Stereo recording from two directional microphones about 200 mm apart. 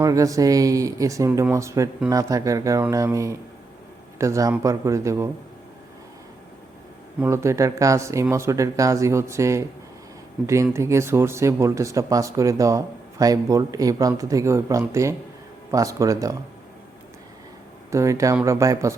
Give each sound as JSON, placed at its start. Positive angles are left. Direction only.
{"t": 0.0, "sound": "speech", "side_deg": -15}
{"t": 7.2, "sound": "speech", "side_deg": -15}
{"t": 17.9, "sound": "speech", "side_deg": -15}